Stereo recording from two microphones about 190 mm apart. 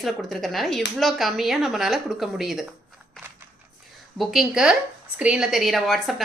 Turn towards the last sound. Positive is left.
turn(degrees=0)  # may be behind; listen again after turning